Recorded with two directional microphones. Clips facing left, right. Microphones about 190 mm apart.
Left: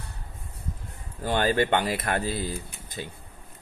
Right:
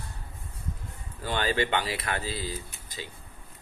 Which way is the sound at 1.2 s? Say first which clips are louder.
Left 4 dB; 50° left (ahead or behind).